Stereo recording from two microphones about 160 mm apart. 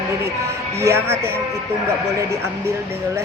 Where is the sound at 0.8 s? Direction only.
15° right (ahead or behind).